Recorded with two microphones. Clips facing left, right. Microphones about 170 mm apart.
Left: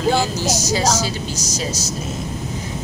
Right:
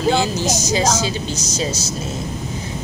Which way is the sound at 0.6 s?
20° right (ahead or behind).